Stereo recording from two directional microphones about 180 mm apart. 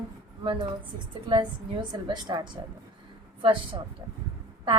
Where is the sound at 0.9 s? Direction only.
25° right (ahead or behind).